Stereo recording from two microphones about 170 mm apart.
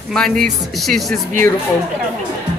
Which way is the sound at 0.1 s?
5° left (ahead or behind).